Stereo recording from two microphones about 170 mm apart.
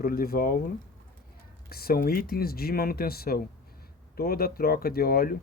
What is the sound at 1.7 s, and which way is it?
Speech, 65° left (ahead or behind).